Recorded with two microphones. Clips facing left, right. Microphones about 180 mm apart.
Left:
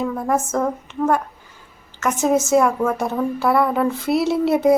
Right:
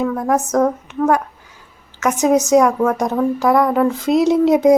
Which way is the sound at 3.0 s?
15° right (ahead or behind).